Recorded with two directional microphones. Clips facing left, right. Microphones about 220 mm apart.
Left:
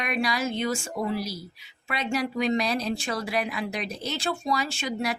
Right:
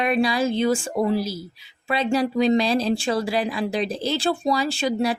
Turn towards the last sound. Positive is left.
turn(degrees=-30)  # may be behind; listen again after turning